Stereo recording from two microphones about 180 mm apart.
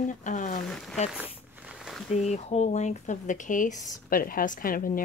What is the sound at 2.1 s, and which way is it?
Speech, 40° left (ahead or behind).